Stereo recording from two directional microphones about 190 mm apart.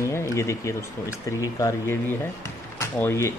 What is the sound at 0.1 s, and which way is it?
Speech, 15° left (ahead or behind).